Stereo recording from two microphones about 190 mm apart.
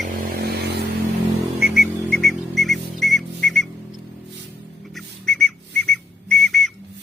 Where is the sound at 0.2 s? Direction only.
50° right (ahead or behind).